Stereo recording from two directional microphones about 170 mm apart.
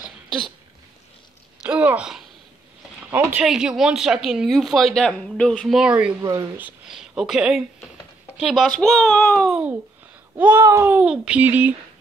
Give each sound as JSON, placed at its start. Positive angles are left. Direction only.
{"t": 1.7, "sound": "speech", "side_deg": -5}
{"t": 6.2, "sound": "speech", "side_deg": -20}
{"t": 6.9, "sound": "speech", "side_deg": -5}
{"t": 9.5, "sound": "speech", "side_deg": -5}